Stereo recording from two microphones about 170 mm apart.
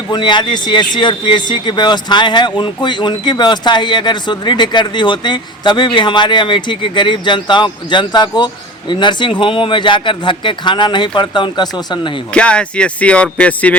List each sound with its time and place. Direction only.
0.1 s speech: 25° left (ahead or behind)
12.3 s speech: 5° left (ahead or behind)